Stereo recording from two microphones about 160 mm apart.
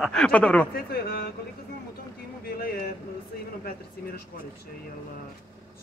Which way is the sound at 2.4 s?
70° left (ahead or behind).